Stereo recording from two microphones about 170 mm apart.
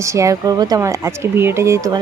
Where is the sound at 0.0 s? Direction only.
20° right (ahead or behind).